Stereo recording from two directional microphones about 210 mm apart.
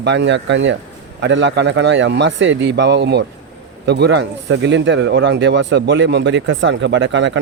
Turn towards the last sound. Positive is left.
turn(degrees=-60)  # may be behind; listen again after turning